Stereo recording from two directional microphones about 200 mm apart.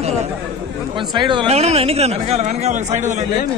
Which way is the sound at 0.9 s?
25° right (ahead or behind).